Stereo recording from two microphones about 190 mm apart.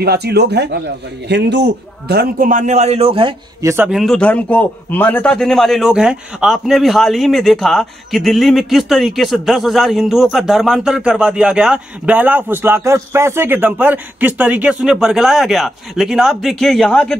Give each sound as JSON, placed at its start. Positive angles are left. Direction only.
{"t": 0.0, "sound": "a man's voice", "side_deg": -55}
{"t": 3.6, "sound": "a man's voice", "side_deg": -10}
{"t": 4.0, "sound": "a man's voice", "side_deg": 5}